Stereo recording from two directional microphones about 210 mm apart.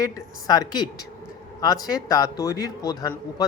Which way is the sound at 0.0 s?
15° left (ahead or behind).